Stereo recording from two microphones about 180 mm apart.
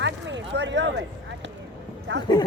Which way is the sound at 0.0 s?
80° right.